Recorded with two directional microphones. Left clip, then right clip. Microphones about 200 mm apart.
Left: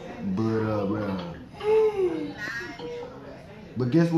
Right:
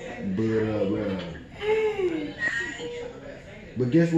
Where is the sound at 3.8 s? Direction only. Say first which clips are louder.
Right 2 dB; 15° left (ahead or behind).